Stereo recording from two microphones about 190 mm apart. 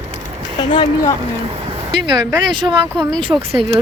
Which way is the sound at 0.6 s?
25° left (ahead or behind).